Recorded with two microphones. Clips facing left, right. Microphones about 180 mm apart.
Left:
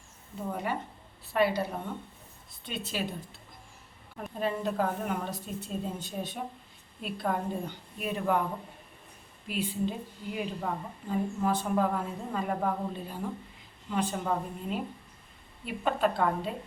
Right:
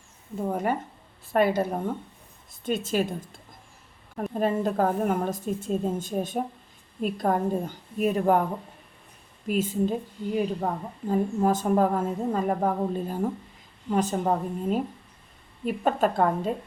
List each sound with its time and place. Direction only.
0.4 s a woman's voice: 45° right (ahead or behind)
9.5 s a woman's voice: 45° right (ahead or behind)